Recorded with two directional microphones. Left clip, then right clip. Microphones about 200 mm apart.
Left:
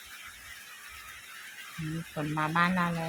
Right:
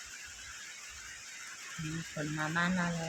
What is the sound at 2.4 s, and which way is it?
Speech, 10° left (ahead or behind).